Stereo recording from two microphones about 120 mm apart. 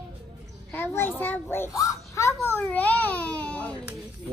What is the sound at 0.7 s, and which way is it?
Speech, 20° left (ahead or behind).